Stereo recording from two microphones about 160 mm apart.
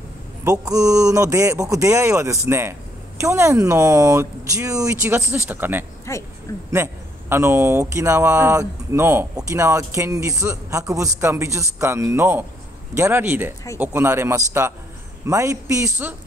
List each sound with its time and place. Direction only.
0.4 s speech: 20° right (ahead or behind)
6.1 s speech: 20° left (ahead or behind)
6.7 s speech: 15° right (ahead or behind)